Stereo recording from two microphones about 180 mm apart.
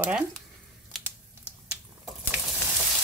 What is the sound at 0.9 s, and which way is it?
Typing, centre (ahead or behind).